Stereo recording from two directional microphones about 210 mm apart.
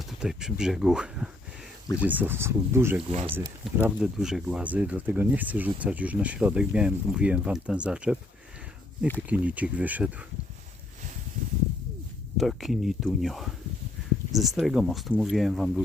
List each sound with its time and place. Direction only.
0.0 s speech: centre (ahead or behind)
3.1 s speech: 30° right (ahead or behind)
3.6 s speech: 5° right (ahead or behind)
9.3 s speech: 5° right (ahead or behind)
12.4 s speech: centre (ahead or behind)